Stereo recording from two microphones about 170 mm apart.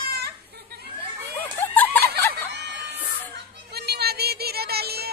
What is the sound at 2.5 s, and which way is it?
Music, 90° right.